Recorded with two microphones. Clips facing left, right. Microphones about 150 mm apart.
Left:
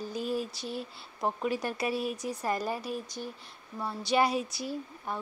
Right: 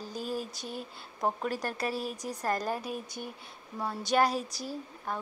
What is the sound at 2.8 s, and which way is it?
Speech, 55° right (ahead or behind).